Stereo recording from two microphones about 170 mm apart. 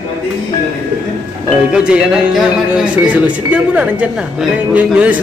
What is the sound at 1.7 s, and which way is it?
Speech, 5° right (ahead or behind).